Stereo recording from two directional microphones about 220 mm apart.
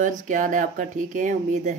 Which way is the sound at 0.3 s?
35° right (ahead or behind).